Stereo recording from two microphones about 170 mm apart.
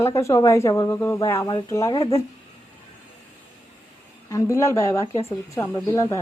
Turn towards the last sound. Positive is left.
turn(degrees=20)  # may be behind; listen again after turning